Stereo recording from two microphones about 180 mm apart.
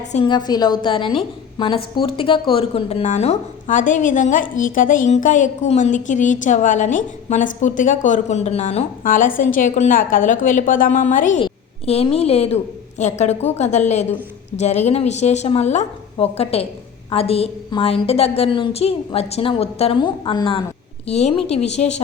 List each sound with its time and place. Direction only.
0.0 s a woman's voice: 40° left (ahead or behind)
0.3 s a woman's voice: 25° left (ahead or behind); by 11.3 s 45° left (ahead or behind)
11.4 s a woman's voice: 30° left (ahead or behind)